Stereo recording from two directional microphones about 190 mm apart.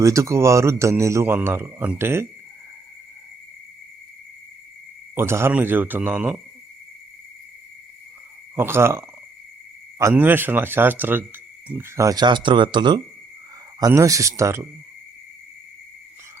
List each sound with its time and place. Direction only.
0.0 s speech: 15° right (ahead or behind)
5.1 s speech: 15° right (ahead or behind)
8.5 s speech: 10° right (ahead or behind)